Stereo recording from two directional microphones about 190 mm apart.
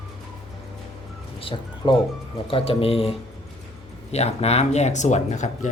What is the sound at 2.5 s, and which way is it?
Speech, 30° left (ahead or behind).